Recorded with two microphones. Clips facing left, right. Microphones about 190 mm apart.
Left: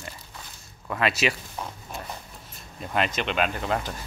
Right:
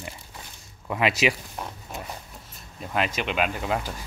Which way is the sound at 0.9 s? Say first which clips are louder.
Right 2 dB; 15° right (ahead or behind).